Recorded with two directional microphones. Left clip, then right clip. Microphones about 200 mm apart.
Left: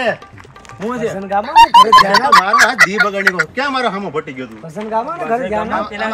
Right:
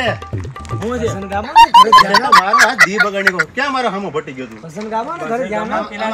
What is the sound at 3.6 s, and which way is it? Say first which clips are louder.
Music: even; 15° right (ahead or behind).